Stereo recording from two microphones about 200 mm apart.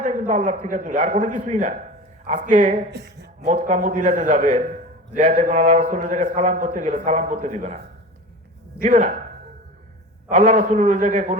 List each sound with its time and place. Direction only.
0.0 s a man's voice: 40° right (ahead or behind)
2.9 s speech: 55° right (ahead or behind)
3.4 s a man's voice: 40° right (ahead or behind)
8.8 s a man's voice: 40° right (ahead or behind)
10.2 s a man's voice: 40° right (ahead or behind)